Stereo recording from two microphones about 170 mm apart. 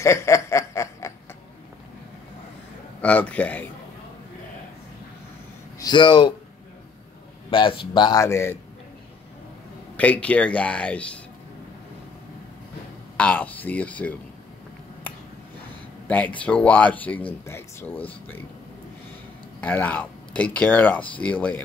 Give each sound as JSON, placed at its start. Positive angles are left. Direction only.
{"t": 0.0, "sound": "snicker", "side_deg": 15}
{"t": 3.0, "sound": "speech", "side_deg": 10}
{"t": 5.8, "sound": "speech", "side_deg": 25}
{"t": 7.5, "sound": "speech", "side_deg": 30}
{"t": 9.9, "sound": "speech", "side_deg": 10}
{"t": 13.2, "sound": "speech", "side_deg": 10}
{"t": 16.1, "sound": "speech", "side_deg": 10}
{"t": 19.6, "sound": "speech", "side_deg": 10}